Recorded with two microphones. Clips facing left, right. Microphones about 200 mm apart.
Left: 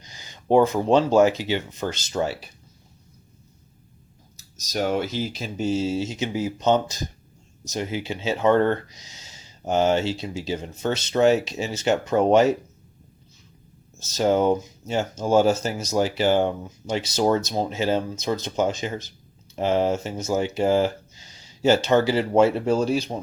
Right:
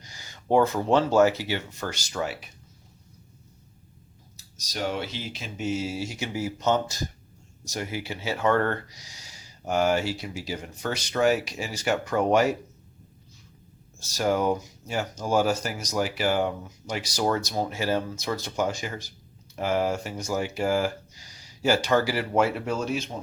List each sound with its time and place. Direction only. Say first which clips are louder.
0.0 s speech: left 2 dB; 20° left (ahead or behind)
4.5 s speech: left 6 dB; 45° left (ahead or behind); by 12.5 s 25° left (ahead or behind)
14.0 s speech: left 4 dB; 20° left (ahead or behind)